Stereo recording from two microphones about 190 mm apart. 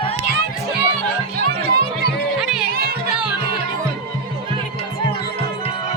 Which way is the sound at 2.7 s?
55° right (ahead or behind).